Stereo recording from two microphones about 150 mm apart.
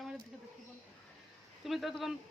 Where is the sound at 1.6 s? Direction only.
Centre (ahead or behind).